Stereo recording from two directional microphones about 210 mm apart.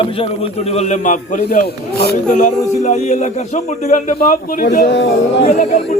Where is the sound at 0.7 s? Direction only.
35° left (ahead or behind); by 2.1 s 50° left (ahead or behind).